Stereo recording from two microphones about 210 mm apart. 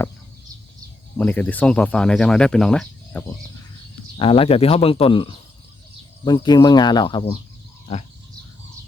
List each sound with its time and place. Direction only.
1.2 s speech: 5° left (ahead or behind)
4.2 s speech: 25° left (ahead or behind)